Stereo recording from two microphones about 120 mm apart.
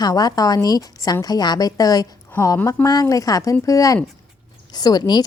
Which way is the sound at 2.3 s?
20° left (ahead or behind).